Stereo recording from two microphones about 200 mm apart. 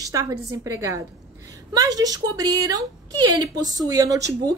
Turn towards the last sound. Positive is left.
turn(degrees=-15)  # may be behind; listen again after turning